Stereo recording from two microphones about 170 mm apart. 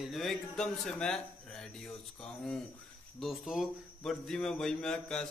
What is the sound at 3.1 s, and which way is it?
A man's voice, centre (ahead or behind).